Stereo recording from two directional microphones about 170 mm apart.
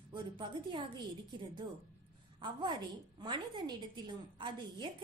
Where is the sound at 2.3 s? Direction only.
25° right (ahead or behind).